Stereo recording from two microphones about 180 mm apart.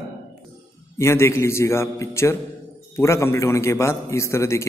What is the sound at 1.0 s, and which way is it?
A man's voice, 15° left (ahead or behind).